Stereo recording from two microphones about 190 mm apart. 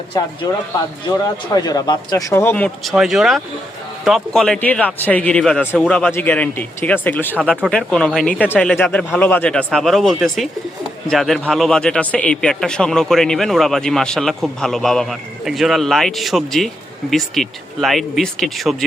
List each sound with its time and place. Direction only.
0.1 s speech: 20° left (ahead or behind)
1.5 s a man's voice: 20° left (ahead or behind); by 18.8 s centre (ahead or behind)